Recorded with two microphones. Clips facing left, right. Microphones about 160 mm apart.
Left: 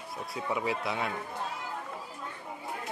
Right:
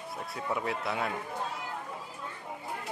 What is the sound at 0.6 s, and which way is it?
Speech, centre (ahead or behind).